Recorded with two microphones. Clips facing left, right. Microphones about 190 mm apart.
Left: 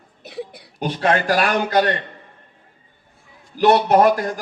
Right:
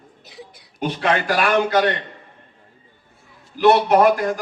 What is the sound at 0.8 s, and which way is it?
A man's voice, 40° left (ahead or behind).